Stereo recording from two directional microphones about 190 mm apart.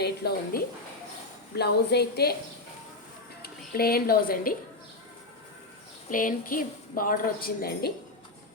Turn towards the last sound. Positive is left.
turn(degrees=55)  # may be behind; listen again after turning